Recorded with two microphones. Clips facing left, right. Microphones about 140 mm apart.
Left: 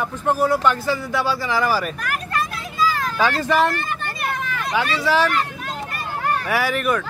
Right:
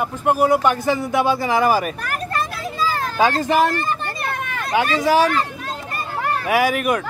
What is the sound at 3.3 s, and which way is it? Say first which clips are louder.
Speech: even; 45° right (ahead or behind).